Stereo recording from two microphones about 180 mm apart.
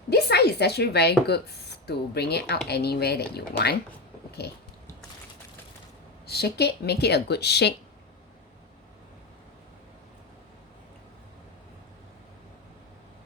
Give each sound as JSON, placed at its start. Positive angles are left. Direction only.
{"t": 0.1, "sound": "a woman's voice", "side_deg": 65}
{"t": 4.3, "sound": "a sound", "side_deg": 65}
{"t": 6.2, "sound": "speech", "side_deg": 60}